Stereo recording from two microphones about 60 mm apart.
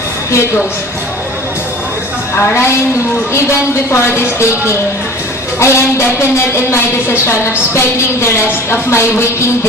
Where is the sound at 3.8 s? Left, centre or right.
Left.